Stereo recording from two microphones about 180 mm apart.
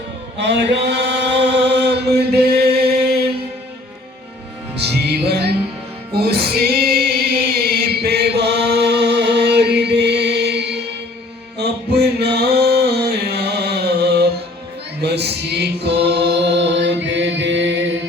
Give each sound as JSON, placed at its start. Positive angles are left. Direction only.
{"t": 0.3, "sound": "chant", "side_deg": -75}
{"t": 5.0, "sound": "music", "side_deg": -65}
{"t": 7.5, "sound": "chant", "side_deg": -60}
{"t": 11.5, "sound": "mantra", "side_deg": -65}
{"t": 15.0, "sound": "chant", "side_deg": -65}